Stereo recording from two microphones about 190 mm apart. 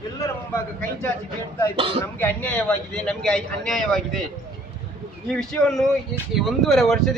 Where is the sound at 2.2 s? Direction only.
5° left (ahead or behind).